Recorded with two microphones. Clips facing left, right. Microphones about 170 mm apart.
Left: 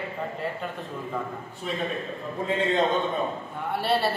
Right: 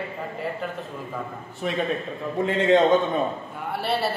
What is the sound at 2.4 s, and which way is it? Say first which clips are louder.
Speech: right 6 dB; 90° right.